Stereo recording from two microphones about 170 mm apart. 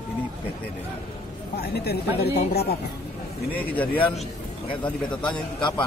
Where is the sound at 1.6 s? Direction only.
70° left (ahead or behind).